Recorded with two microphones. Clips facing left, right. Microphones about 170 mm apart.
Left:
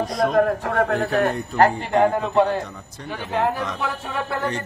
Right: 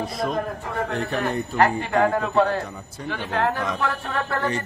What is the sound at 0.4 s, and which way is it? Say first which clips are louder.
Speech: left 8 dB; 70° left (ahead or behind).